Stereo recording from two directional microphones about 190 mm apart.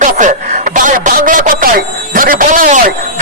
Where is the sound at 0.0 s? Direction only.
40° right (ahead or behind).